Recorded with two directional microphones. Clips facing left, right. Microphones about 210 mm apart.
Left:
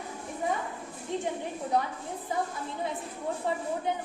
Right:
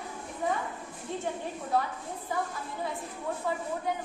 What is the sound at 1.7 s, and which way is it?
Speech, 20° left (ahead or behind).